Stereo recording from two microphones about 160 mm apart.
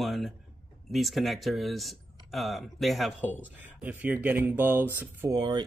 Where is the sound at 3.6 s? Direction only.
10° right (ahead or behind).